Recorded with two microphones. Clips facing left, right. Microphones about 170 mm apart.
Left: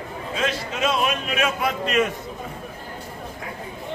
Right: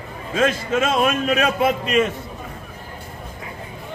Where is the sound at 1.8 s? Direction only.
Centre (ahead or behind).